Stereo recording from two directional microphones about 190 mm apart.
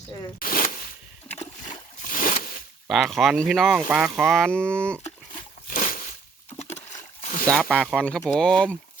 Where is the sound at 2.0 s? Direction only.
45° left (ahead or behind).